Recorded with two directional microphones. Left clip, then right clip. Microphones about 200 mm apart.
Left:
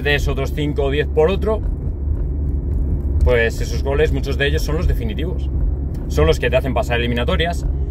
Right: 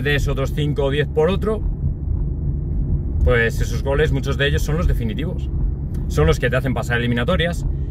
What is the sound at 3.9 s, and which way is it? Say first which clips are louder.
Speech: left 2 dB; 20° right (ahead or behind).